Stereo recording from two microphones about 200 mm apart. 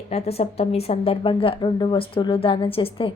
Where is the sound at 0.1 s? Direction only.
30° left (ahead or behind).